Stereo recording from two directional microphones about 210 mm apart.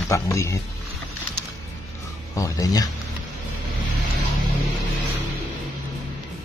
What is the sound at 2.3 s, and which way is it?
Speech, 15° left (ahead or behind).